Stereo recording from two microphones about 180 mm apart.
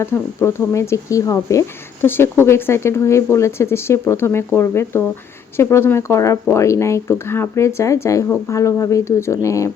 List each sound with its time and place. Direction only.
0.0 s speech: 15° left (ahead or behind)